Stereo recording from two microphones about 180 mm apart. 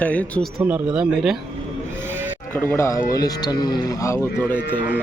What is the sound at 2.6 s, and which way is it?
Speech, 15° left (ahead or behind).